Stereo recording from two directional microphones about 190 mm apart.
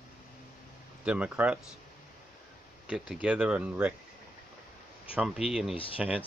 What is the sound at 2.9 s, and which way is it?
Speech, 5° right (ahead or behind).